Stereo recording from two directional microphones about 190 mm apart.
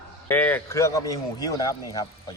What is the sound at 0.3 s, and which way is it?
Speech, 10° left (ahead or behind).